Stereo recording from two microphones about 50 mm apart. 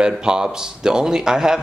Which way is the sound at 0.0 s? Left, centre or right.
Centre.